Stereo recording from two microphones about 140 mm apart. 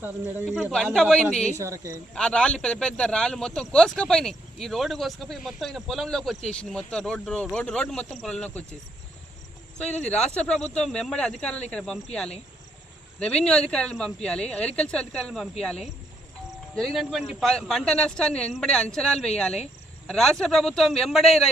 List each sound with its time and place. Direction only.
0.0 s speech: 15° right (ahead or behind)
0.4 s speech: centre (ahead or behind)
1.6 s speech: 20° right (ahead or behind)
2.1 s speech: 5° left (ahead or behind)
10.1 s speech: 5° left (ahead or behind)
13.1 s speech: 5° left (ahead or behind)